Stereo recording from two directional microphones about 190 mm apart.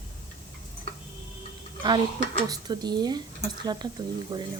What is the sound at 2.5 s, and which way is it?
Speech, 20° right (ahead or behind).